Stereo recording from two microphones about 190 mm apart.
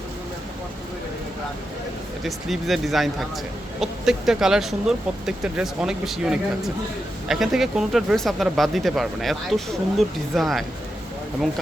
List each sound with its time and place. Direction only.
2.2 s speech: centre (ahead or behind)